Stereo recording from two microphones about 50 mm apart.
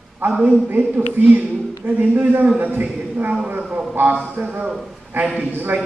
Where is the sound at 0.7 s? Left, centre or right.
Right.